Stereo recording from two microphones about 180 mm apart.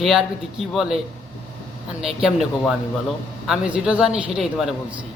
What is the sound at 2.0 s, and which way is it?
A man's voice, centre (ahead or behind).